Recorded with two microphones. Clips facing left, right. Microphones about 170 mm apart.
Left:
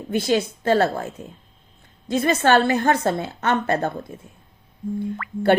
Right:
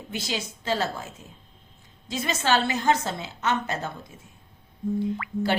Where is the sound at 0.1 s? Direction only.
55° left (ahead or behind).